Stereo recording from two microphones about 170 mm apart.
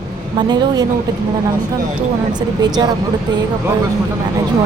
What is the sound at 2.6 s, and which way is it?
Speech, 25° right (ahead or behind).